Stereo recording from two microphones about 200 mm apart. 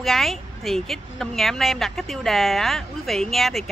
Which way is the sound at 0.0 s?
Centre (ahead or behind).